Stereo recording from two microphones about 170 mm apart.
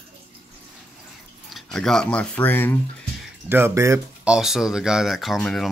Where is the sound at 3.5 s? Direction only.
15° right (ahead or behind).